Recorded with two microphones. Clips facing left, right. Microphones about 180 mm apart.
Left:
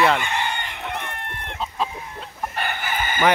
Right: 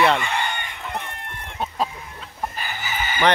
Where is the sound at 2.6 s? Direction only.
60° left (ahead or behind).